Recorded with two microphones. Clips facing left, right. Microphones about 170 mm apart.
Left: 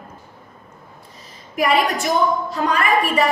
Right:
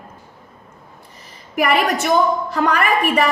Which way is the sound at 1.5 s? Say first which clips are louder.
Right 1 dB; 65° right (ahead or behind).